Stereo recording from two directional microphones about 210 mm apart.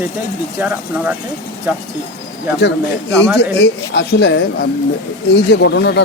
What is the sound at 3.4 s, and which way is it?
Speech, 55° left (ahead or behind).